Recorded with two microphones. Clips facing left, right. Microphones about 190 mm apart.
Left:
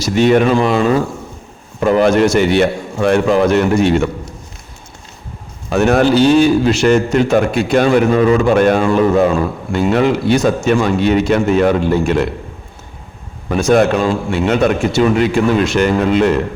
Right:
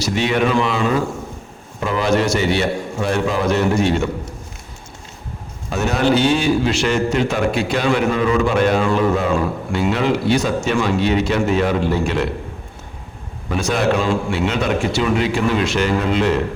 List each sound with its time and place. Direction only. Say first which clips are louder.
0.0 s a man's voice: left 7 dB; 45° left (ahead or behind)
1.8 s a man's voice: left 7 dB; 50° left (ahead or behind)
5.7 s a man's voice: left 8 dB; 60° left (ahead or behind)
6.1 s a man's voice: left 6 dB; 40° left (ahead or behind)
13.5 s a man's voice: left 6 dB; 45° left (ahead or behind)